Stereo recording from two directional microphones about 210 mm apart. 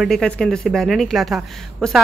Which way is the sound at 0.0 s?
Centre (ahead or behind).